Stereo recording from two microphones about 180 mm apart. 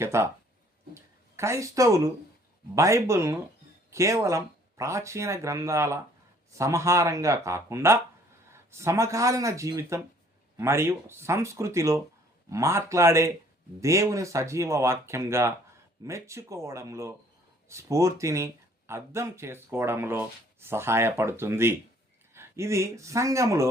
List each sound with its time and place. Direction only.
0.0 s speech: 15° right (ahead or behind)